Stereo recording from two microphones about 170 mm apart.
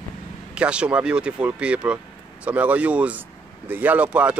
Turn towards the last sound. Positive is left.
turn(degrees=-10)  # may be behind; listen again after turning